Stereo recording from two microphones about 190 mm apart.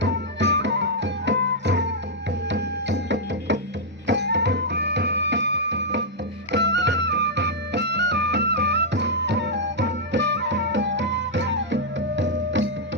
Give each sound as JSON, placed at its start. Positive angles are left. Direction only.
{"t": 0.0, "sound": "music", "side_deg": -65}